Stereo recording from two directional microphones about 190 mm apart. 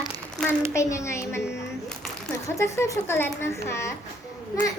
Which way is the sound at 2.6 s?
15° left (ahead or behind).